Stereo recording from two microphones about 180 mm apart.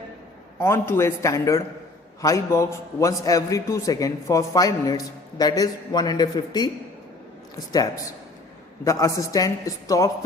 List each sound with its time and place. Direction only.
0.6 s a man's voice: 15° left (ahead or behind)
8.8 s a man's voice: 20° left (ahead or behind)